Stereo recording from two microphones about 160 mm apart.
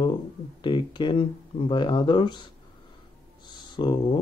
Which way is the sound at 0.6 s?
30° left (ahead or behind).